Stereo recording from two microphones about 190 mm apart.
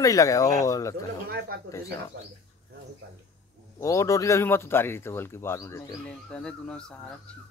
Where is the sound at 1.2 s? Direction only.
55° right (ahead or behind).